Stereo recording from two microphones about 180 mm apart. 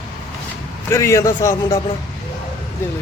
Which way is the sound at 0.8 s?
15° left (ahead or behind).